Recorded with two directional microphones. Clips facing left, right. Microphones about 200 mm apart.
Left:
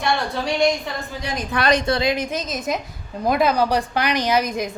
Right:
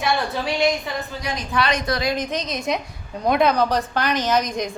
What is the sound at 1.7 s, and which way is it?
Speech, 30° left (ahead or behind).